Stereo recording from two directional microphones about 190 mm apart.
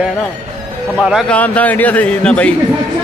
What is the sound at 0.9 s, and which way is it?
A man's voice, centre (ahead or behind).